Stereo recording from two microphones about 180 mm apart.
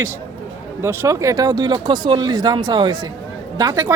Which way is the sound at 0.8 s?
15° right (ahead or behind).